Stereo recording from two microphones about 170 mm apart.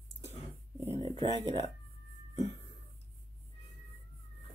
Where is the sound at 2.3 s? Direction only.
40° left (ahead or behind).